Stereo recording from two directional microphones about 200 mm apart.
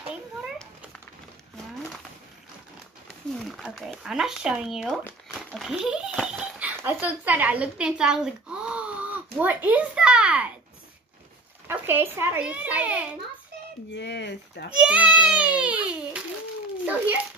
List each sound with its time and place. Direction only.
0.1 s cat: 5° left (ahead or behind)
3.4 s speech: centre (ahead or behind)
11.6 s a child's voice: 10° right (ahead or behind)
13.9 s speech: 60° left (ahead or behind)
14.9 s a child's voice: 5° right (ahead or behind)